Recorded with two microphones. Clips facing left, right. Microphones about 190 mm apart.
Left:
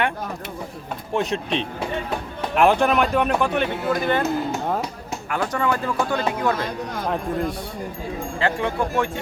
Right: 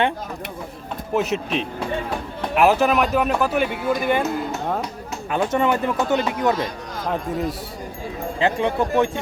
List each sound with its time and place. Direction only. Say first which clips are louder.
1.1 s speech: right 1 dB; 5° right (ahead or behind)
5.3 s speech: right 3 dB; 20° right (ahead or behind)
7.1 s speech: right 1 dB; 5° right (ahead or behind)
8.4 s speech: right 3 dB; 20° right (ahead or behind)